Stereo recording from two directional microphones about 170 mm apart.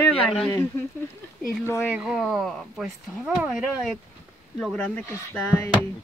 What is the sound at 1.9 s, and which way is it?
Speech, 5° right (ahead or behind).